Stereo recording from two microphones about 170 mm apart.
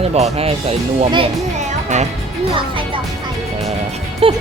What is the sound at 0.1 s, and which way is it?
Speech, 35° right (ahead or behind).